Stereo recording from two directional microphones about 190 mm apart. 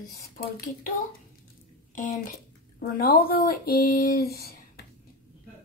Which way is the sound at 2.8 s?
50° left (ahead or behind).